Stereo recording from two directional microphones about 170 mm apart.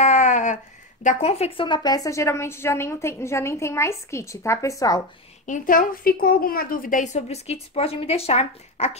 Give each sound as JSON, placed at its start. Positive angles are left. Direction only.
{"t": 0.0, "sound": "a sound", "side_deg": 45}
{"t": 1.0, "sound": "a woman's voice", "side_deg": 40}
{"t": 5.5, "sound": "a woman's voice", "side_deg": 55}